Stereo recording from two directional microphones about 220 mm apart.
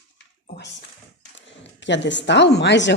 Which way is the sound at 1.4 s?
55° left (ahead or behind).